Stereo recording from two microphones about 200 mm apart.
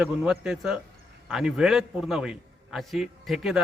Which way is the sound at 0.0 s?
5° right (ahead or behind).